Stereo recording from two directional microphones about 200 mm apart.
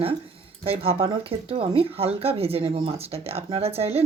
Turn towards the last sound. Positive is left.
turn(degrees=-30)  # may be behind; listen again after turning